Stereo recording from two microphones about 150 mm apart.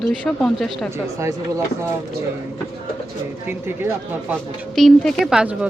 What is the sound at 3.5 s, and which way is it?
Speech, 15° right (ahead or behind).